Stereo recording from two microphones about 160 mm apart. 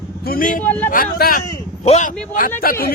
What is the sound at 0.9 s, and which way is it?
Speech, 65° left (ahead or behind).